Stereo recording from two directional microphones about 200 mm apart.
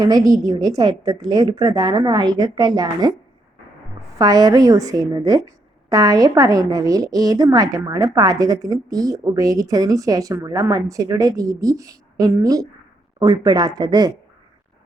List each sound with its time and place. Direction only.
0.0 s a woman's voice: 20° right (ahead or behind)
4.2 s a woman's voice: 20° right (ahead or behind)